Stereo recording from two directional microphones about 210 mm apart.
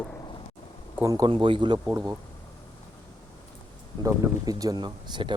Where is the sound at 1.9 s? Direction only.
10° right (ahead or behind).